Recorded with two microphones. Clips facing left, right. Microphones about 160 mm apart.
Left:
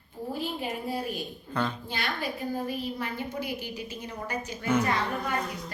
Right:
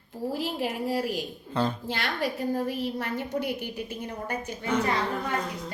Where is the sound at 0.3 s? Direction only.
90° right.